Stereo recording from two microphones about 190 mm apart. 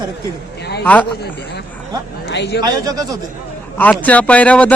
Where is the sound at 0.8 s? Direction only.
10° left (ahead or behind).